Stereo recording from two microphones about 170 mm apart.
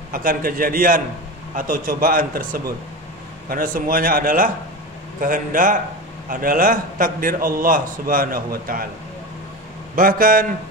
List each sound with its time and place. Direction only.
0.1 s a man's voice: 55° right (ahead or behind)
9.9 s a man's voice: 55° right (ahead or behind)